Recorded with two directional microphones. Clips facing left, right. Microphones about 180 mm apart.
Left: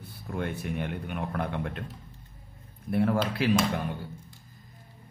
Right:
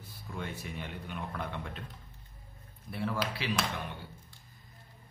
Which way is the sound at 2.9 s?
55° left (ahead or behind).